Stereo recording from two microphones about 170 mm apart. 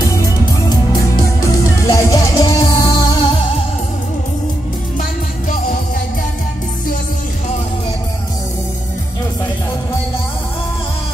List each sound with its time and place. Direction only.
0.0 s music: 20° left (ahead or behind)
1.9 s music: 20° left (ahead or behind)